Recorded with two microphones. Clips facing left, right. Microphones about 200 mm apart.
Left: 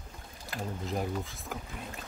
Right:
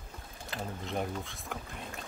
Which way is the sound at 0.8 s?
Centre (ahead or behind).